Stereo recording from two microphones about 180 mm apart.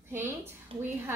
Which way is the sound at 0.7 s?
30° right (ahead or behind).